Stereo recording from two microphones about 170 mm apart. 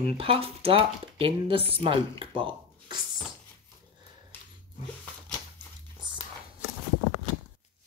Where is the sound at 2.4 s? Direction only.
25° right (ahead or behind).